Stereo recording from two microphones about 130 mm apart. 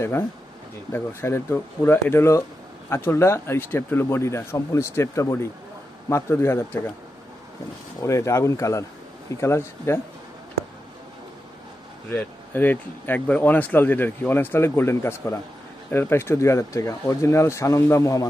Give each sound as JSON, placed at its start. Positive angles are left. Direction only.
{"t": 0.0, "sound": "speech", "side_deg": 15}
{"t": 8.0, "sound": "speech", "side_deg": 20}
{"t": 12.1, "sound": "speech", "side_deg": 15}